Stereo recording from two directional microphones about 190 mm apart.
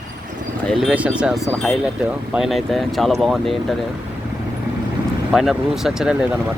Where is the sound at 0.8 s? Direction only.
5° right (ahead or behind).